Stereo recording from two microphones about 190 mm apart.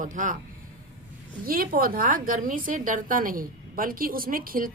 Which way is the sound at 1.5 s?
50° right (ahead or behind).